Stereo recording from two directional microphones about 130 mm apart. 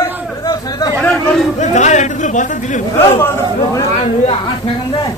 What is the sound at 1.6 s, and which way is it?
Chatter, 65° left (ahead or behind).